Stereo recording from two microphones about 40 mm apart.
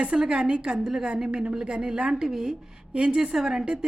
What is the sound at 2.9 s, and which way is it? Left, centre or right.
Speech, right.